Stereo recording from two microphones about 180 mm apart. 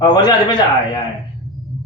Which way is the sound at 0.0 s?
25° left (ahead or behind).